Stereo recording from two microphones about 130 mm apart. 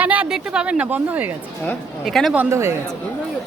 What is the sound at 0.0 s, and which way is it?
Speech, 10° right (ahead or behind).